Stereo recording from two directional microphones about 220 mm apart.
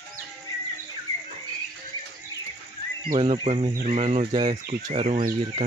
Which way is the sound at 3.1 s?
25° right (ahead or behind).